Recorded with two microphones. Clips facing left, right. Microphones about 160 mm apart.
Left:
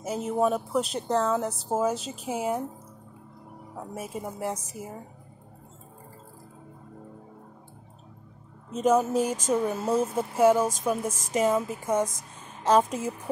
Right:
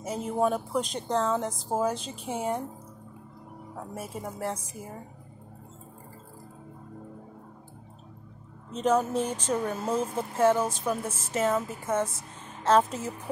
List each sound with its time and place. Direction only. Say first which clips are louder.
0.0 s speech: left 2 dB; 5° left (ahead or behind)
2.0 s speech: left 2 dB; 35° right (ahead or behind)
2.2 s speech: left 2 dB; 5° left (ahead or behind)
3.7 s speech: left 2 dB; 10° left (ahead or behind)
8.7 s speech: left 3 dB; 5° left (ahead or behind)